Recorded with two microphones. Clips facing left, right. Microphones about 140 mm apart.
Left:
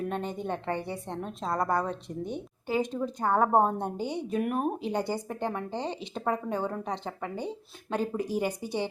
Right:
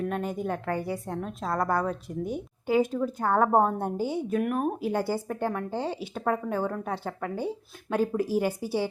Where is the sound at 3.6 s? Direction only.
20° left (ahead or behind).